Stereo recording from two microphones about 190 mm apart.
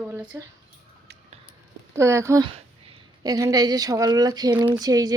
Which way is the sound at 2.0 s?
15° right (ahead or behind).